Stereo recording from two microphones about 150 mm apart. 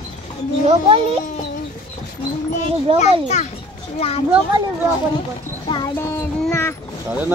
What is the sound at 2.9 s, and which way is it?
Speech, 35° right (ahead or behind).